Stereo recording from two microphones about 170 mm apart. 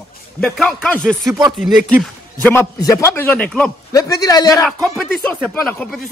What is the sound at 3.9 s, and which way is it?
Speech, 20° left (ahead or behind).